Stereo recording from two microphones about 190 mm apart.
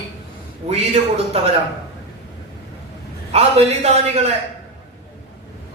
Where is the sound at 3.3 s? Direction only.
35° right (ahead or behind).